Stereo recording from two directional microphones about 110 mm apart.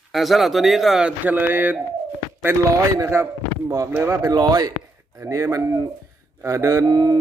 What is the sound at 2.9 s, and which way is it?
Speech, 25° right (ahead or behind).